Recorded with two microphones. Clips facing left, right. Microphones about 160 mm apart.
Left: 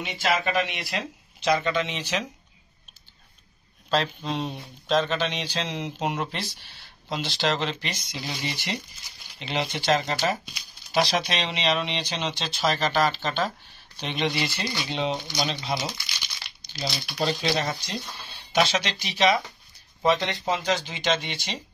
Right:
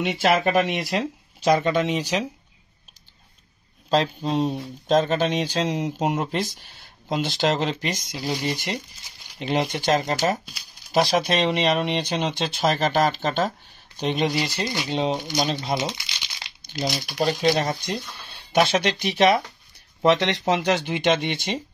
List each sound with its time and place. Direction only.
0.0 s speech: 55° right (ahead or behind)
0.5 s speech: 45° right (ahead or behind)
3.9 s speech: 40° right (ahead or behind)
15.7 s speech: 25° right (ahead or behind)
17.0 s speech: 45° right (ahead or behind)
20.0 s speech: 70° right (ahead or behind); by 21.5 s 55° right (ahead or behind)